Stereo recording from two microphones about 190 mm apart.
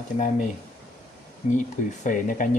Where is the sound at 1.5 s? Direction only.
40° left (ahead or behind).